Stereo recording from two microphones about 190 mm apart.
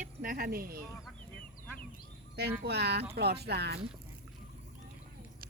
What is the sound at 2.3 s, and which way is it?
Speech, 60° right (ahead or behind).